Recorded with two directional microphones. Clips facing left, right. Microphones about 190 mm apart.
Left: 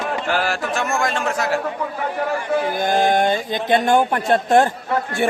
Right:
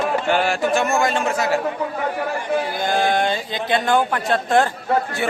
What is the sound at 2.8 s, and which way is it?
Speech, 15° left (ahead or behind).